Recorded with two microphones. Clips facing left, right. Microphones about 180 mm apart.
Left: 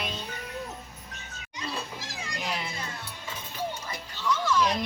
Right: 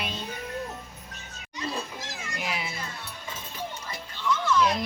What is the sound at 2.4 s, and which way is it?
Cat, 5° right (ahead or behind).